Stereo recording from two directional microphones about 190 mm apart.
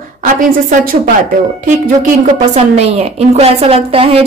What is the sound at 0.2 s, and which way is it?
Speech, 45° right (ahead or behind).